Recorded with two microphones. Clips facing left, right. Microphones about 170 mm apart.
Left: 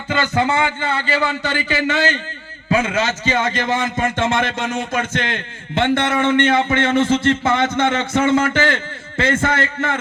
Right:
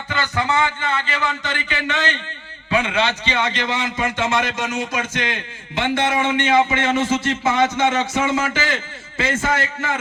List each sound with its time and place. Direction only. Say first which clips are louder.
0.1 s a man's voice: left 4 dB; 25° left (ahead or behind); by 10.0 s 55° left (ahead or behind)